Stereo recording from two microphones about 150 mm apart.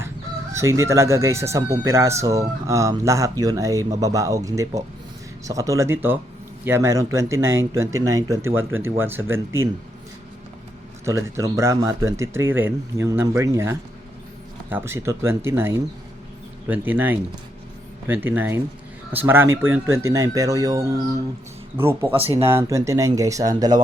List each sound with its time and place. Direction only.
0.5 s speech: 20° right (ahead or behind)
11.0 s speech: 20° right (ahead or behind)